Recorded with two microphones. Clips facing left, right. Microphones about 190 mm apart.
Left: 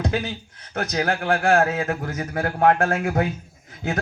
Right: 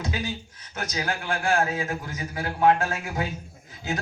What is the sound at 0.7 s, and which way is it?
A man's voice, 55° left (ahead or behind).